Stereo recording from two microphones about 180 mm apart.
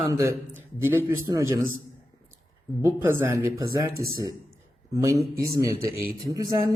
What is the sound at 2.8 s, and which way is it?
Speech, 15° right (ahead or behind).